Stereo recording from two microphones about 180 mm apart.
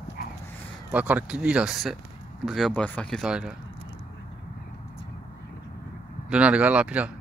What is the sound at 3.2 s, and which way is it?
Speech, 5° right (ahead or behind).